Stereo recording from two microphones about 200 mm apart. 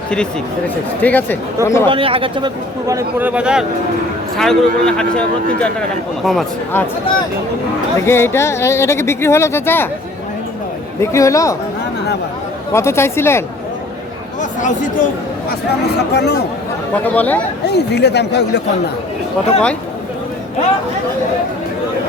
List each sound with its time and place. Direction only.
1.0 s speech: 10° left (ahead or behind)
1.9 s a man's voice: 25° right (ahead or behind); by 6.8 s centre (ahead or behind)
8.0 s speech: 10° left (ahead or behind)
11.0 s speech: 15° left (ahead or behind)
12.7 s speech: 15° left (ahead or behind)
14.6 s speech: 40° left (ahead or behind)
16.1 s speech: 55° left (ahead or behind)
16.9 s speech: 10° left (ahead or behind)
17.7 s speech: 55° left (ahead or behind)